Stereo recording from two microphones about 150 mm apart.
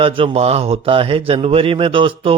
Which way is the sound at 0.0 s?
40° right (ahead or behind).